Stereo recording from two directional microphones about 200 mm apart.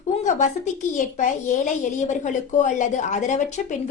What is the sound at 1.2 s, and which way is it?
A woman's voice, 40° left (ahead or behind).